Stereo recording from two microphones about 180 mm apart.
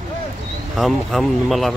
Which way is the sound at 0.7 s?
Centre (ahead or behind).